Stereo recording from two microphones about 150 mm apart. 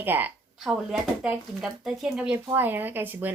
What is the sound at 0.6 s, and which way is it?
Speech, 5° right (ahead or behind).